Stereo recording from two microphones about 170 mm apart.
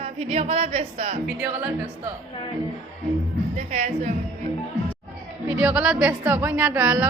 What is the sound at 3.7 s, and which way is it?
Speech, 45° right (ahead or behind).